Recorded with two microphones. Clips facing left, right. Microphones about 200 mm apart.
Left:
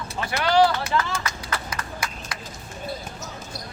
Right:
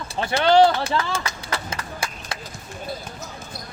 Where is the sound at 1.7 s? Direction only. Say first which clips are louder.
Right 1 dB; 30° right (ahead or behind).